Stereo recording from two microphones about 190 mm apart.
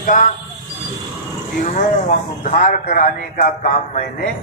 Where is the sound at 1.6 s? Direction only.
40° left (ahead or behind).